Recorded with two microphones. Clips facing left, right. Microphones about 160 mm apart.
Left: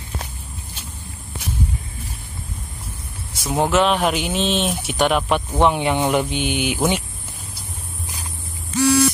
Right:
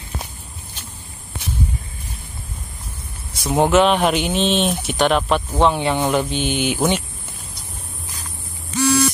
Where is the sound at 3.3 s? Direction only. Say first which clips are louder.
Right 3 dB; centre (ahead or behind).